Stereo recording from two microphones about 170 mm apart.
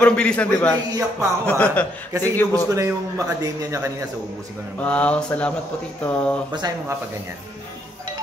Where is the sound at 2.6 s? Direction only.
15° right (ahead or behind).